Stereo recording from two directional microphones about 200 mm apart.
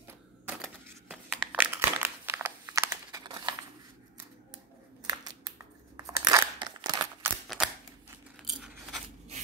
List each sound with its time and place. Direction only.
1.0 s crumpling: 5° right (ahead or behind)
5.0 s crumpling: 20° right (ahead or behind)
7.4 s a sound: 5° right (ahead or behind)